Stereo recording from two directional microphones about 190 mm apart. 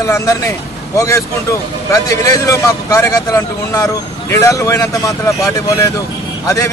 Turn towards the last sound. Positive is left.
turn(degrees=15)  # may be behind; listen again after turning